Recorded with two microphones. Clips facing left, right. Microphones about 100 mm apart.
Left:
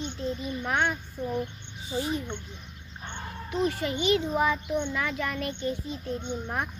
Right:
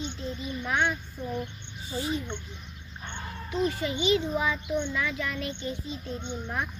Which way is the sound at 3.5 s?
55° left (ahead or behind).